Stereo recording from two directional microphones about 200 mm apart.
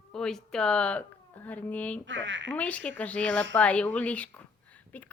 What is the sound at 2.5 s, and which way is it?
A woman's voice, 5° left (ahead or behind).